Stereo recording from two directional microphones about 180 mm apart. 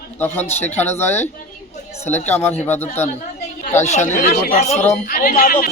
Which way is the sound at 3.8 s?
40° left (ahead or behind).